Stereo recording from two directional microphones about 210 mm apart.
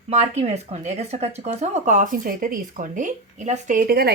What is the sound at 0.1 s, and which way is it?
A woman's voice, 30° right (ahead or behind).